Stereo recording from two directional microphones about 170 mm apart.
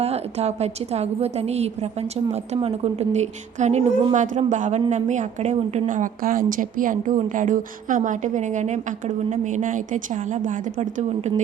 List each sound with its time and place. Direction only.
0.0 s a woman's voice: 40° right (ahead or behind)